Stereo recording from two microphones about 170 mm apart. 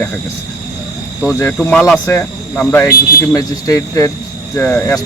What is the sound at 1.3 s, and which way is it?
Speech, 15° left (ahead or behind).